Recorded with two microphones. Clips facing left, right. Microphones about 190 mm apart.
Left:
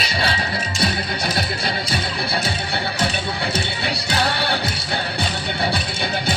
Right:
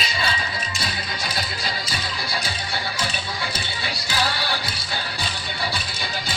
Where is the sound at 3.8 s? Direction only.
60° left (ahead or behind).